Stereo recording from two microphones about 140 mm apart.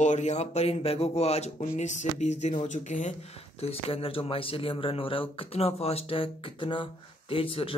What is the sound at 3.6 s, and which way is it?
Speech, 45° left (ahead or behind).